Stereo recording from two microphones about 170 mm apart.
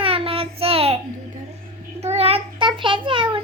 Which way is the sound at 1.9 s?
40° right (ahead or behind).